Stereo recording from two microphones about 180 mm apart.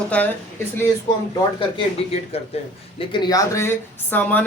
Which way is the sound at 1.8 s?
35° left (ahead or behind).